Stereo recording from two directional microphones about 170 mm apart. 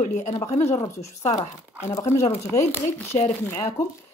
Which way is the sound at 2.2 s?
15° left (ahead or behind).